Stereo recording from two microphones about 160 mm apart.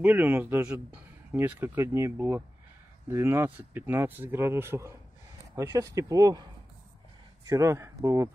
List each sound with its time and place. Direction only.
0.0 s speech: 10° right (ahead or behind)
7.4 s speech: 20° right (ahead or behind)